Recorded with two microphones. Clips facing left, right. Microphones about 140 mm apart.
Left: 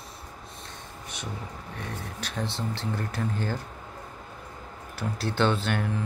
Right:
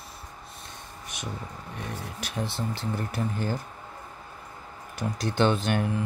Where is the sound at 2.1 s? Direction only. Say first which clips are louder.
Right 1 dB; 10° right (ahead or behind).